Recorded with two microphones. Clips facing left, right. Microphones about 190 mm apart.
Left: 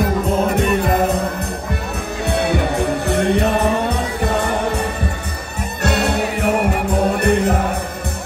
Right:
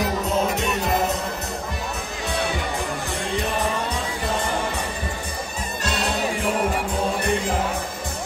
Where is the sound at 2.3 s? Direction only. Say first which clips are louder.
Left 8 dB; 60° left (ahead or behind).